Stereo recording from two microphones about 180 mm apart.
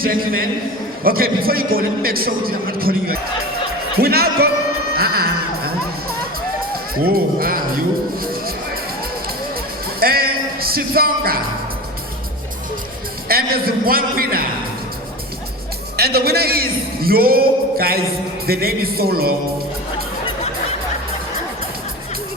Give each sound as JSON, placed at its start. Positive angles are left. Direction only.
{"t": 0.0, "sound": "a man's voice", "side_deg": -55}
{"t": 4.9, "sound": "music", "side_deg": -60}
{"t": 7.0, "sound": "a man's voice", "side_deg": -55}
{"t": 8.2, "sound": "music", "side_deg": -55}
{"t": 10.0, "sound": "a sound", "side_deg": -55}
{"t": 13.2, "sound": "a man's voice", "side_deg": -55}
{"t": 16.0, "sound": "a man's voice", "side_deg": -60}